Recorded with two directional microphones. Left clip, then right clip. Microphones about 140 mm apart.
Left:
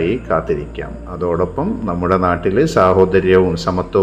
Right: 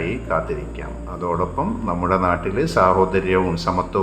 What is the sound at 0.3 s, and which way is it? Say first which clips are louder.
Speech: left 2 dB; 30° left (ahead or behind).